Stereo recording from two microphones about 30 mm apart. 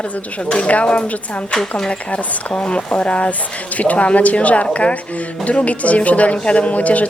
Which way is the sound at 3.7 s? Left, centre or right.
Left.